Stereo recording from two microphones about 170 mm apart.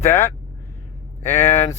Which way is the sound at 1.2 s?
45° left (ahead or behind).